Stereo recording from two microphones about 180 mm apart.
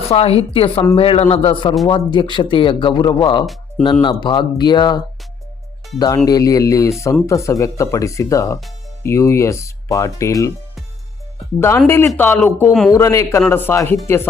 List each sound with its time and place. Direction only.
0.1 s a woman's voice: 35° left (ahead or behind)
3.4 s speech: centre (ahead or behind)
4.0 s speech: 25° left (ahead or behind)
6.2 s speech: 20° left (ahead or behind)
11.9 s speech: 15° left (ahead or behind)